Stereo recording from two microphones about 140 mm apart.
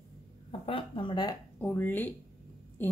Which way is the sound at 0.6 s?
35° left (ahead or behind).